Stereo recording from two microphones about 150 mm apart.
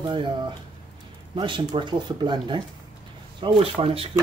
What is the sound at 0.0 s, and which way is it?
Speech, 30° right (ahead or behind).